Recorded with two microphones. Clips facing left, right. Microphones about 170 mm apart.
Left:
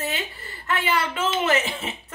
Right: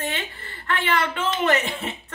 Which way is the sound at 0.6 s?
5° left (ahead or behind).